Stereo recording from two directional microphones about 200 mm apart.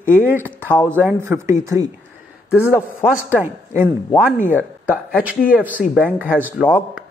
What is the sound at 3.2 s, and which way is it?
Speech, 10° right (ahead or behind).